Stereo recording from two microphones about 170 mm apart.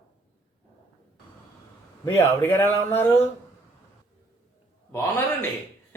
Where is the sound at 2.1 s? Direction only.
15° left (ahead or behind).